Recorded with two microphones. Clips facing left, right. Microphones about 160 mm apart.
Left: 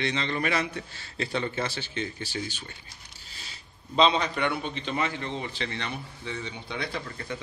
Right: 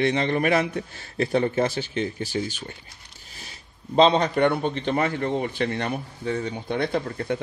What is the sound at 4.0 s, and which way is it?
A man's voice, 50° right (ahead or behind).